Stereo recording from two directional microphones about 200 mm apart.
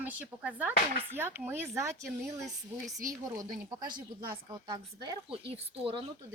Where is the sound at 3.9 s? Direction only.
45° right (ahead or behind).